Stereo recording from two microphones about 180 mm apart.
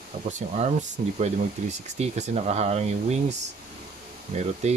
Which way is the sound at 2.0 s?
40° right (ahead or behind).